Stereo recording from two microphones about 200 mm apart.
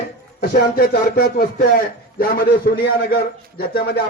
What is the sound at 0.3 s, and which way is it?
Speech, 50° left (ahead or behind).